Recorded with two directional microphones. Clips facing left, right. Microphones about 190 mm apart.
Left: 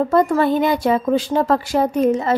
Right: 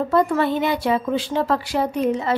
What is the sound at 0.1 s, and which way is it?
A woman's voice, 45° left (ahead or behind).